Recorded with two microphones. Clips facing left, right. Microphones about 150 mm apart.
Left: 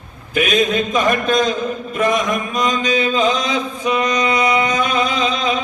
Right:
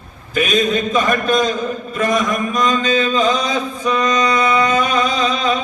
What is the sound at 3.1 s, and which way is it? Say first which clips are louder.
Mantra: right 1 dB; 40° right (ahead or behind).